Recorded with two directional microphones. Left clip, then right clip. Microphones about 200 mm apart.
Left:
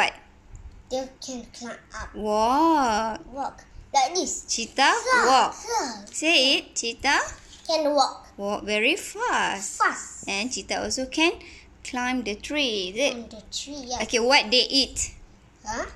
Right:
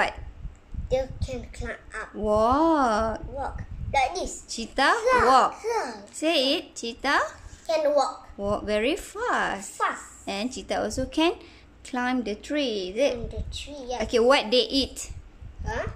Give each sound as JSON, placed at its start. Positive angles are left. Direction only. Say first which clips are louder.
{"t": 1.2, "sound": "a woman's voice", "louder": "right 1 dB", "side_deg": -30}
{"t": 2.1, "sound": "a woman's voice", "louder": "even", "side_deg": -20}
{"t": 7.7, "sound": "a woman's voice", "louder": "left 1 dB", "side_deg": -30}
{"t": 8.4, "sound": "a woman's voice", "louder": "left 1 dB", "side_deg": -20}
{"t": 15.6, "sound": "a child's voice", "louder": "even", "side_deg": -10}